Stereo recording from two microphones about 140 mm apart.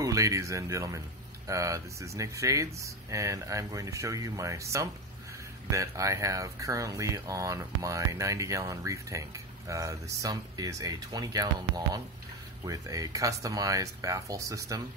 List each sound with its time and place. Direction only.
0.0 s speech: 25° right (ahead or behind)